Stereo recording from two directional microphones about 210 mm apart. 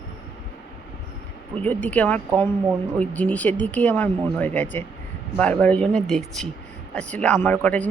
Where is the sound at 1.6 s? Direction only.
5° left (ahead or behind).